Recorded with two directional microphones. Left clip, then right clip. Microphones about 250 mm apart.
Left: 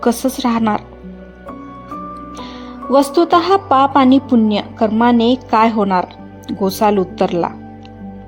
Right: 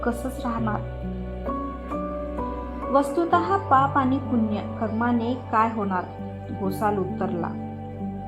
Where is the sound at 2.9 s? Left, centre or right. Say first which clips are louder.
Left 9 dB; left.